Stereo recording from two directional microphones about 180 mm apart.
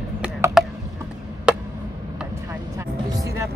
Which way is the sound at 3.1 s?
20° right (ahead or behind).